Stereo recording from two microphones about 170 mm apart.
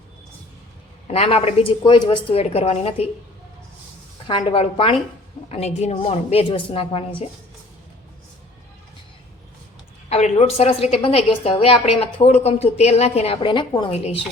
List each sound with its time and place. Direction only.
1.0 s a woman's voice: 35° left (ahead or behind)
4.3 s a woman's voice: 30° left (ahead or behind)
10.1 s a woman's voice: 40° left (ahead or behind)